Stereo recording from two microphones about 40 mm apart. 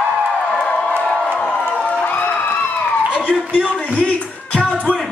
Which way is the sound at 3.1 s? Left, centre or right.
Left.